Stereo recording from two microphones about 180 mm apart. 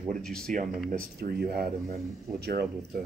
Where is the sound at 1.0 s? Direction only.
55° right (ahead or behind).